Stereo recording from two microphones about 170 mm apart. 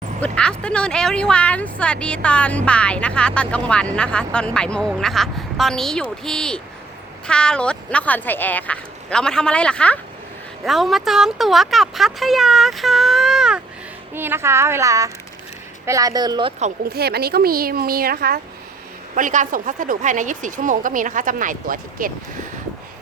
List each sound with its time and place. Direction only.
0.2 s speech: 5° left (ahead or behind)
14.1 s a woman's voice: 15° right (ahead or behind)
16.9 s a woman's voice: 65° right (ahead or behind)
19.1 s speech: 50° right (ahead or behind)